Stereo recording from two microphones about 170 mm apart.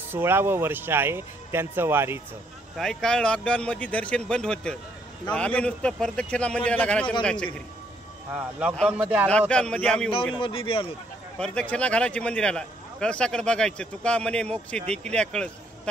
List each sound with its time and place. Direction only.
0.1 s speech: 15° right (ahead or behind)
2.8 s a man's voice: 5° left (ahead or behind)
8.4 s speech: 10° right (ahead or behind)
9.5 s speech: 5° left (ahead or behind)
10.4 s speech: 30° left (ahead or behind)
11.3 s speech: 5° left (ahead or behind)